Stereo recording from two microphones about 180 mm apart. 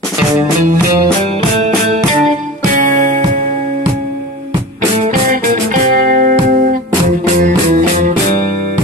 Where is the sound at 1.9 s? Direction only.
45° right (ahead or behind).